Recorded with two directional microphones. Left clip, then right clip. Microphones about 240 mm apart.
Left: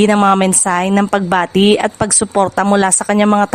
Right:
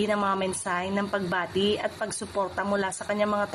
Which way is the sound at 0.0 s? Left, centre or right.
Left.